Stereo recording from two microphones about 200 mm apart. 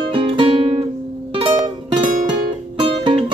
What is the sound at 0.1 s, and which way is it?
Music, 25° right (ahead or behind).